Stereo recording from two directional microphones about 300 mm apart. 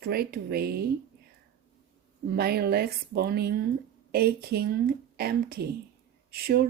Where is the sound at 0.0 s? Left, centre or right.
Right.